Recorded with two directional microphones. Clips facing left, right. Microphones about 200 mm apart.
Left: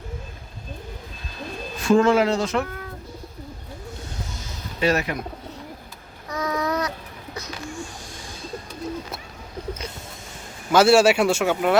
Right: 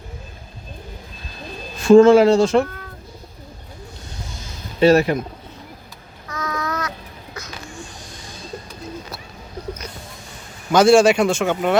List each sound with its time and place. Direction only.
1.8 s speech: 25° right (ahead or behind)
4.8 s speech: 30° right (ahead or behind)
6.2 s a sound: 15° left (ahead or behind)
10.7 s speech: 5° left (ahead or behind)